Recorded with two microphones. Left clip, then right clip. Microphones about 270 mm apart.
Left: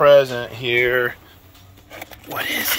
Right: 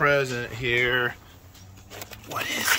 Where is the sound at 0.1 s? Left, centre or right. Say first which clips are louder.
Left 11 dB; centre.